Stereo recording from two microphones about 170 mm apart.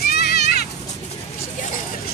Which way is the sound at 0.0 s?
65° left (ahead or behind).